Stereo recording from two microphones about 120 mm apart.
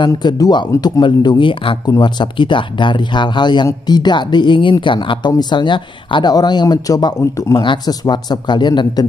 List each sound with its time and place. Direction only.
0.0 s speech: 35° left (ahead or behind)